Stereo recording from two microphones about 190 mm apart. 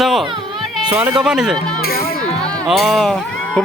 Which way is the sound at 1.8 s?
55° left (ahead or behind).